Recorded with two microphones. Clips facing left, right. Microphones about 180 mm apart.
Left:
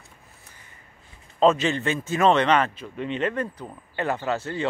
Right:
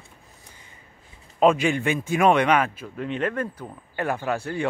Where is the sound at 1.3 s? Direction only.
10° right (ahead or behind).